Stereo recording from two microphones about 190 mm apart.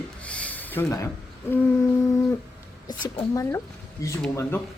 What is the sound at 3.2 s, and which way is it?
Speech, 15° left (ahead or behind).